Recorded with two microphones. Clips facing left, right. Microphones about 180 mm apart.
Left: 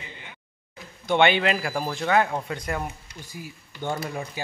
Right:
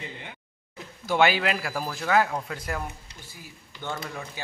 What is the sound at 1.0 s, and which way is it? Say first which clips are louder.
A man's voice: left 2 dB; 5° right (ahead or behind).